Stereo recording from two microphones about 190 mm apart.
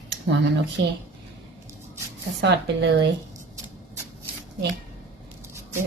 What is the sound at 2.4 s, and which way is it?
Speech, 65° right (ahead or behind).